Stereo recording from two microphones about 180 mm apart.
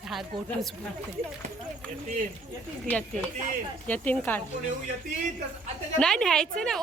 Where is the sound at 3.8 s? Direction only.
10° left (ahead or behind).